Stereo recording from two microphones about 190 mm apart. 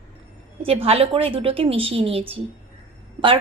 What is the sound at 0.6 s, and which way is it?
A woman's voice, 30° right (ahead or behind).